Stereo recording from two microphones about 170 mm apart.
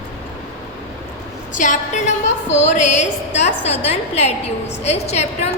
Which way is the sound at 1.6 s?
50° left (ahead or behind).